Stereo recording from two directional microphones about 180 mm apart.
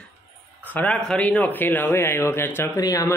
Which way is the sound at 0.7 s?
5° left (ahead or behind).